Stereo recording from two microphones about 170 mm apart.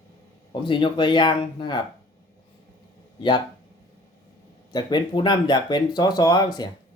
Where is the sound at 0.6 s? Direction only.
30° left (ahead or behind).